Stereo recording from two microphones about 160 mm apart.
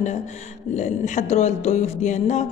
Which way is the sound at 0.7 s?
50° left (ahead or behind).